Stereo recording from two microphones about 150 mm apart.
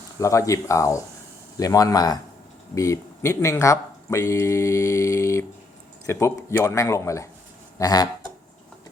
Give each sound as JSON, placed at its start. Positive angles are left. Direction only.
{"t": 0.2, "sound": "speech", "side_deg": 20}